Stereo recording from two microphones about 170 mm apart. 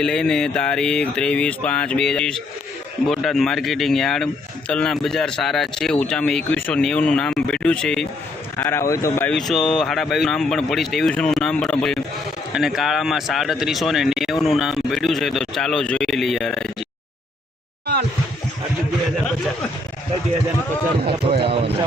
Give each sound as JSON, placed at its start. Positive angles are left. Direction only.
{"t": 0.0, "sound": "a man's voice", "side_deg": 5}
{"t": 9.3, "sound": "speech", "side_deg": 0}
{"t": 21.0, "sound": "speech", "side_deg": -30}